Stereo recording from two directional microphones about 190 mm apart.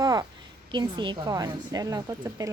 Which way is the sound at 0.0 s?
20° right (ahead or behind).